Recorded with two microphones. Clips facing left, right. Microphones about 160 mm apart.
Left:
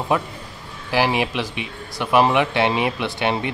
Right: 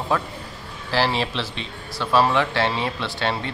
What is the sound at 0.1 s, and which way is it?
Speech, 15° left (ahead or behind).